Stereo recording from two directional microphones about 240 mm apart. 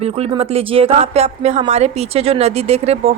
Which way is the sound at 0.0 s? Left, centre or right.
Right.